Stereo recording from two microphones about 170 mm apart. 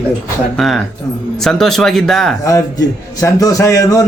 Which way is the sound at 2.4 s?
20° left (ahead or behind).